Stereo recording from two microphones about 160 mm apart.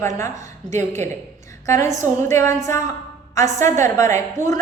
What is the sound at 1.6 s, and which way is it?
A woman's voice, 20° left (ahead or behind).